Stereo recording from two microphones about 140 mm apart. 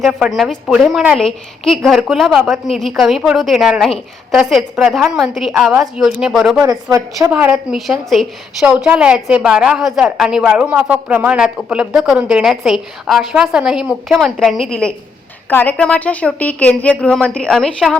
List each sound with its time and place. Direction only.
0.0 s a woman's voice: 5° right (ahead or behind)
6.9 s a woman's voice: 20° right (ahead or behind)
7.5 s a woman's voice: centre (ahead or behind)